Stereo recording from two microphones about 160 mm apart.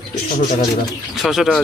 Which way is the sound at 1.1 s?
Centre (ahead or behind).